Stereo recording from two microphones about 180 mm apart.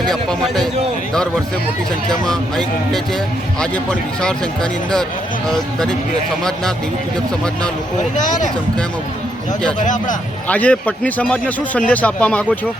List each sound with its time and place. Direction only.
0.0 s speech: centre (ahead or behind)
2.0 s speech: 5° left (ahead or behind)
9.7 s speech: 45° left (ahead or behind)
10.5 s a man's voice: 10° left (ahead or behind)